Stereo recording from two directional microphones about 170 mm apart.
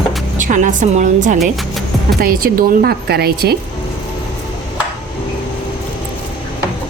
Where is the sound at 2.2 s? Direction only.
60° right (ahead or behind).